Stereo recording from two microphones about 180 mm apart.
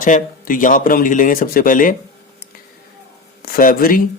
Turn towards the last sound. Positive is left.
turn(degrees=50)  # may be behind; listen again after turning